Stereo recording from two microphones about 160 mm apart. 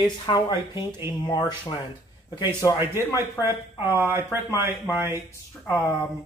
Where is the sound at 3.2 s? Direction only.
15° right (ahead or behind).